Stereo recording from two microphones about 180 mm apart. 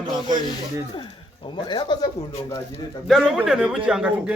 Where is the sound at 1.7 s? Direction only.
25° left (ahead or behind).